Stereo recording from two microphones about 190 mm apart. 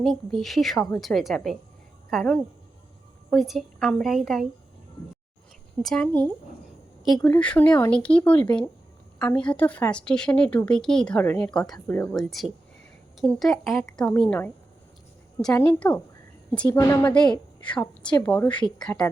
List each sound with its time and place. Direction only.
0.0 s speech: centre (ahead or behind)
5.8 s speech: 5° left (ahead or behind)
15.8 s a woman's voice: 20° left (ahead or behind); by 19.0 s 5° left (ahead or behind)